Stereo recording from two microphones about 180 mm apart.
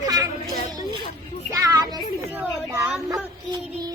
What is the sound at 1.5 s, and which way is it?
Music, 20° right (ahead or behind).